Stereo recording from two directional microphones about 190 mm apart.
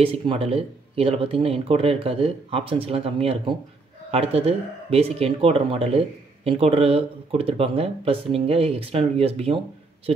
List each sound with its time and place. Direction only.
0.0 s speech: 30° right (ahead or behind)